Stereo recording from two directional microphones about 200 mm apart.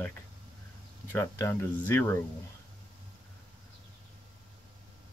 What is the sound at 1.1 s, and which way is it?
Speech, 10° left (ahead or behind).